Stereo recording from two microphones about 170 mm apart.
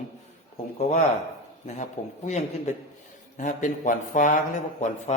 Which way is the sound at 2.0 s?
45° left (ahead or behind).